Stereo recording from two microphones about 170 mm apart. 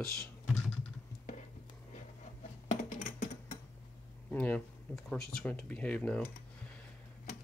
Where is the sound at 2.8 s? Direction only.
50° left (ahead or behind).